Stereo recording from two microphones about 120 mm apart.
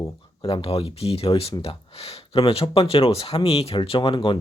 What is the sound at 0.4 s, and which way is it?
Speech, 50° left (ahead or behind).